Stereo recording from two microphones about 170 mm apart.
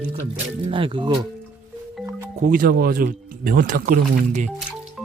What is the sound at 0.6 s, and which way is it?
Speech, 30° right (ahead or behind).